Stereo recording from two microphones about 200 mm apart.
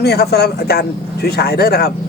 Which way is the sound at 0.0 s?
55° left (ahead or behind).